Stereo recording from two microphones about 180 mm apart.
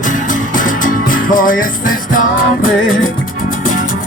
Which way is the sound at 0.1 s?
45° left (ahead or behind).